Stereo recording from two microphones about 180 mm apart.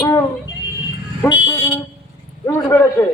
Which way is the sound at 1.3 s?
25° left (ahead or behind).